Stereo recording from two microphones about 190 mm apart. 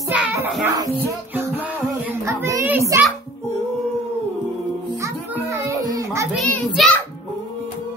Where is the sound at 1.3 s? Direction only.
10° right (ahead or behind).